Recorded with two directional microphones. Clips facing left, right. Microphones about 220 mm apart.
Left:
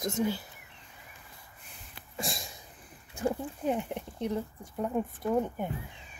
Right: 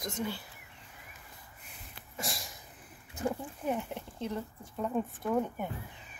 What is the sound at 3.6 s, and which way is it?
Speech, 20° left (ahead or behind).